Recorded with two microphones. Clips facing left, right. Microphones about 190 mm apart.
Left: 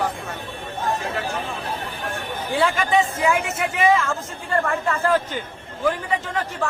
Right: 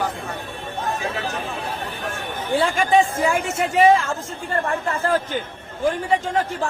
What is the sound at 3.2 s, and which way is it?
Speech, 30° right (ahead or behind).